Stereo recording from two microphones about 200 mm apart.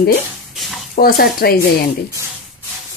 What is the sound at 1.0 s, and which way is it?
Speech, 50° left (ahead or behind).